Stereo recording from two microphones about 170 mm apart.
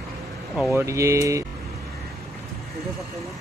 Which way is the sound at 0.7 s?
15° right (ahead or behind).